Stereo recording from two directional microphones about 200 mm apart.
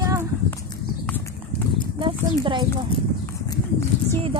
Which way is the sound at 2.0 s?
25° right (ahead or behind).